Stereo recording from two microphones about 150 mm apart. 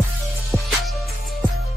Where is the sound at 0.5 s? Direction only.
Centre (ahead or behind).